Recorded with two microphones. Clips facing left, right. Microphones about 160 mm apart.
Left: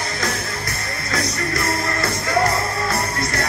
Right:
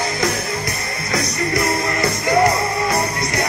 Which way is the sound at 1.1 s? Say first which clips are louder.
Right 3 dB; 20° right (ahead or behind).